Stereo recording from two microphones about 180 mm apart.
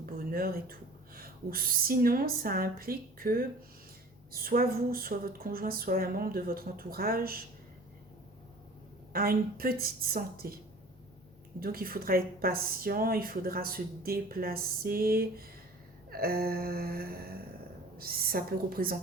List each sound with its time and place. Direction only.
0.0 s speech: 55° right (ahead or behind)
9.1 s speech: 55° right (ahead or behind)
11.6 s speech: 55° right (ahead or behind)